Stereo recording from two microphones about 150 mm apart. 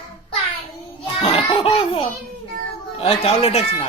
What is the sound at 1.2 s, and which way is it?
Speech, 40° left (ahead or behind).